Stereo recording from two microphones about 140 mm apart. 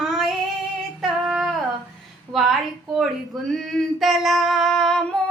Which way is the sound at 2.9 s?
Centre (ahead or behind).